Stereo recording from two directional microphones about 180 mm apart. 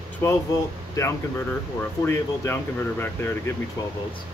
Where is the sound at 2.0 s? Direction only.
15° left (ahead or behind).